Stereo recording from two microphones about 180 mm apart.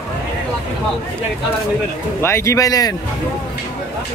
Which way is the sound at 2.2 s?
15° left (ahead or behind).